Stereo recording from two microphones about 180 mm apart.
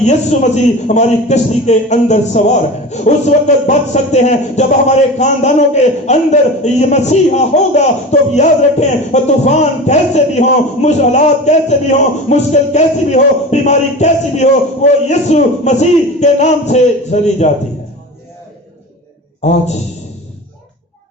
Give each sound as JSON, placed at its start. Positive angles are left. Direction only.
{"t": 0.0, "sound": "speech", "side_deg": 40}
{"t": 19.4, "sound": "speech", "side_deg": 40}